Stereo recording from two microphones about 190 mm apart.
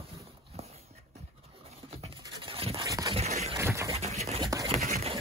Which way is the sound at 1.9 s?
30° right (ahead or behind).